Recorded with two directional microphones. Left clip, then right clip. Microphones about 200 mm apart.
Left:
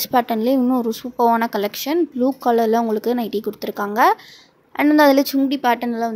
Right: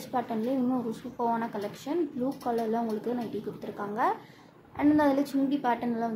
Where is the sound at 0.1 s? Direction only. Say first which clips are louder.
Left 12 dB; 55° left (ahead or behind).